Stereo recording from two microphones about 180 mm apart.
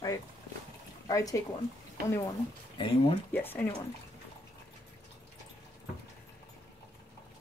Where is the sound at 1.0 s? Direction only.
20° left (ahead or behind).